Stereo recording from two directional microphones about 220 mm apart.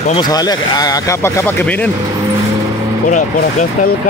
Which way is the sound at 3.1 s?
40° left (ahead or behind).